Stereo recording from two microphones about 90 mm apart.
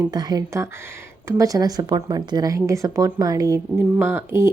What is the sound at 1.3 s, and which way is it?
Speech, 40° right (ahead or behind).